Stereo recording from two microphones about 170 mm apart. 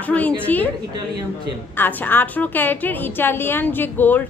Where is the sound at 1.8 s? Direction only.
10° left (ahead or behind).